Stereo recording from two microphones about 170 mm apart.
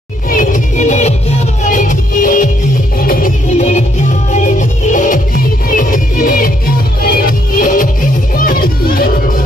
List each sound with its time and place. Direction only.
0.3 s music: 50° left (ahead or behind)